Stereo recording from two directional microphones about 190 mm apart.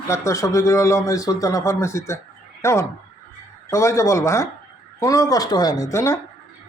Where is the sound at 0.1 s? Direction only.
15° left (ahead or behind).